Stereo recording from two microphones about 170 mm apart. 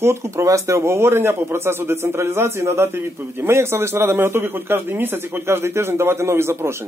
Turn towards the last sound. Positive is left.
turn(degrees=-15)  # may be behind; listen again after turning